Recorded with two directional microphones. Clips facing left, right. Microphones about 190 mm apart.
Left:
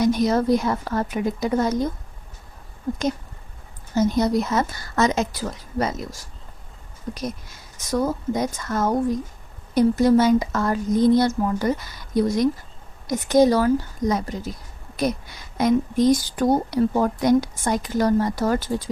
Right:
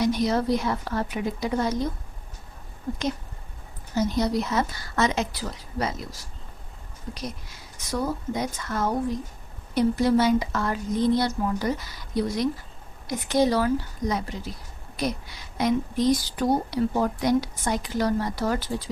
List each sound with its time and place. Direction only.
0.0 s a woman's voice: 45° left (ahead or behind)
3.9 s a woman's voice: 50° left (ahead or behind)